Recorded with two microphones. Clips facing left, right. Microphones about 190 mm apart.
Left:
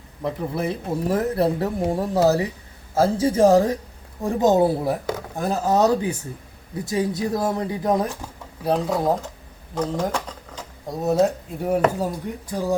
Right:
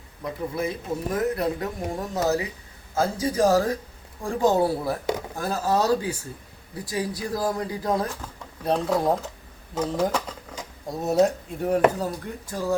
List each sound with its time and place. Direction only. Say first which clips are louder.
0.3 s speech: left 3 dB; 30° left (ahead or behind)
8.6 s speech: left 1 dB; centre (ahead or behind)
11.9 s speech: left 3 dB; 15° left (ahead or behind)